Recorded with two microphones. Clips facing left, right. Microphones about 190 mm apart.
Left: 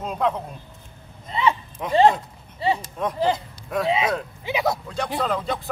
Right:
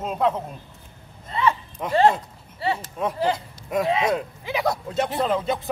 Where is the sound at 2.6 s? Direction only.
15° left (ahead or behind).